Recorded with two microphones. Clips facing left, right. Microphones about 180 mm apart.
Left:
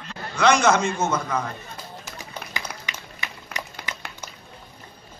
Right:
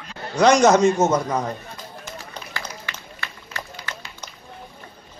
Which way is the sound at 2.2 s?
15° left (ahead or behind).